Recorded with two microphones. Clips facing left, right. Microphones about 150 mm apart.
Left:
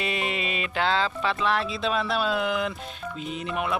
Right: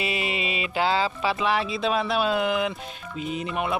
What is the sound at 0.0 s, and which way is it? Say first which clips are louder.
Speech: right 1 dB; 5° right (ahead or behind).